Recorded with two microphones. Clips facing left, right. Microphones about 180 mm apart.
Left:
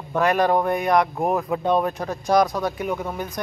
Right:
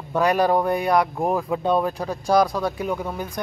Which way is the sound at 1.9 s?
30° right (ahead or behind).